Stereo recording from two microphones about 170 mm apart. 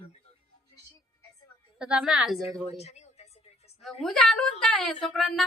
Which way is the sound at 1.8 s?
5° right (ahead or behind).